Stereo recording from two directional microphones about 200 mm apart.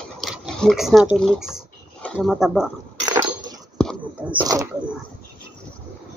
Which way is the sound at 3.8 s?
5° left (ahead or behind).